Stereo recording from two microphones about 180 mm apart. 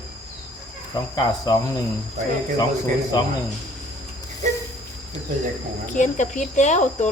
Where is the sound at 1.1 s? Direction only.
25° left (ahead or behind).